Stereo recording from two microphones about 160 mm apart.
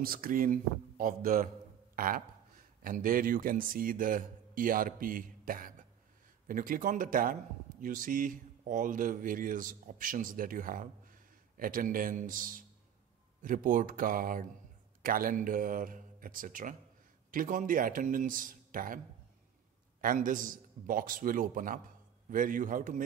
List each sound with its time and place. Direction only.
0.0 s speech: 65° right (ahead or behind)
20.0 s speech: 60° right (ahead or behind)